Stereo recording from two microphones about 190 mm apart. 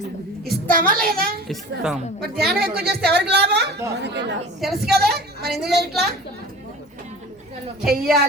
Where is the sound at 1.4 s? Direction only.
Centre (ahead or behind).